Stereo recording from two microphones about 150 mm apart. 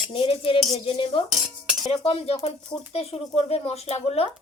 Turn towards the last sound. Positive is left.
turn(degrees=45)  # may be behind; listen again after turning